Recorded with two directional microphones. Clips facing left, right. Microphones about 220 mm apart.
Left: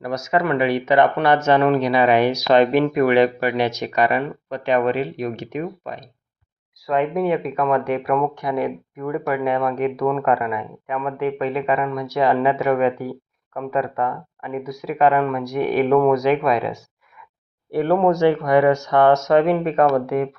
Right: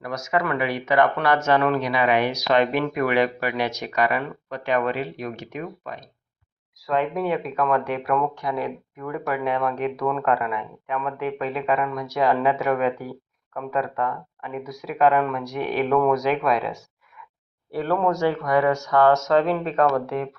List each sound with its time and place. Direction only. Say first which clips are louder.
0.0 s speech: left 4 dB; 25° left (ahead or behind)
7.1 s speech: left 4 dB; 10° left (ahead or behind)
17.7 s speech: left 5 dB; 20° left (ahead or behind)